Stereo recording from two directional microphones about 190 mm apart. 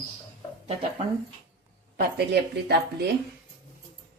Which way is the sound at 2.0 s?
60° right (ahead or behind).